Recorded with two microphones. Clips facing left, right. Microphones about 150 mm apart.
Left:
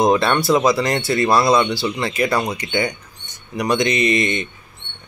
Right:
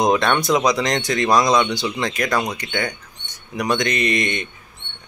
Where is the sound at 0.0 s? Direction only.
5° left (ahead or behind).